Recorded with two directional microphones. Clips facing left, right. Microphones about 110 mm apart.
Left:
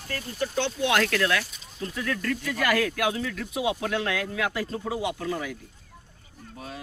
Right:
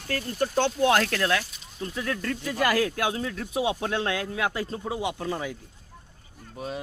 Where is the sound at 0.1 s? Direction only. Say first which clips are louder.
Right 4 dB; 50° right (ahead or behind); by 5.5 s 25° right (ahead or behind).